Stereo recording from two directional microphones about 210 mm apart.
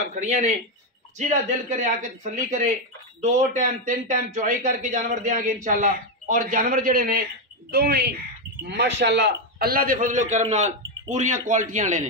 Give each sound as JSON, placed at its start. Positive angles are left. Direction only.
{"t": 0.1, "sound": "a man's voice", "side_deg": -35}